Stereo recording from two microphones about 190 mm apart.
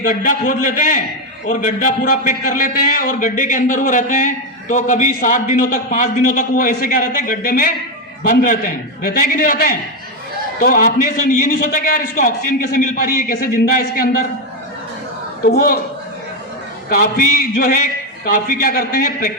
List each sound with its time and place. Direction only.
0.0 s a man's voice: 45° left (ahead or behind)
15.4 s a man's voice: 50° left (ahead or behind)
16.9 s a man's voice: 50° left (ahead or behind)